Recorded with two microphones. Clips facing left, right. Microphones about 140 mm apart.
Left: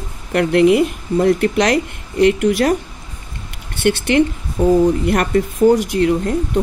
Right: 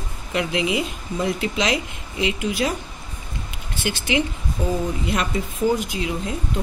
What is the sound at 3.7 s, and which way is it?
A woman's voice, 65° left (ahead or behind).